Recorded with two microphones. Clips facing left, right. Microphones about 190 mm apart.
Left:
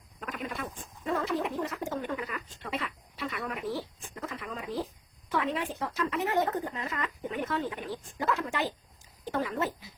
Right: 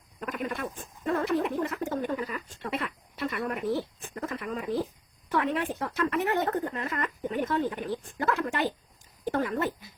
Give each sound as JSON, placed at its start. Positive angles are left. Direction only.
{"t": 0.3, "sound": "speech", "side_deg": -55}
{"t": 2.0, "sound": "speech", "side_deg": -40}
{"t": 2.6, "sound": "speech", "side_deg": -55}